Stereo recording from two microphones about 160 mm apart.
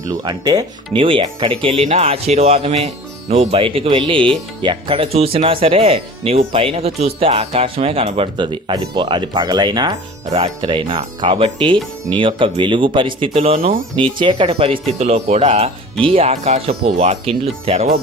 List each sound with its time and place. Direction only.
0.0 s speech: 25° right (ahead or behind)
13.6 s speech: 60° right (ahead or behind)
14.0 s speech: 30° right (ahead or behind)